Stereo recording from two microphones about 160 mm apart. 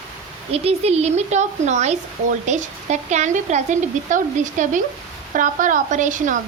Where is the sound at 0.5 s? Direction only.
40° right (ahead or behind).